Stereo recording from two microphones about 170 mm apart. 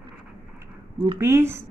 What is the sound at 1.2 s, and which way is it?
Speech, 15° right (ahead or behind).